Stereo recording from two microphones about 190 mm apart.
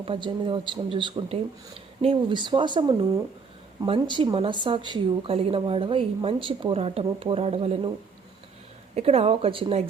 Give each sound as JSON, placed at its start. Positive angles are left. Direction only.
{"t": 0.0, "sound": "a woman's voice", "side_deg": -30}
{"t": 9.0, "sound": "speech", "side_deg": -30}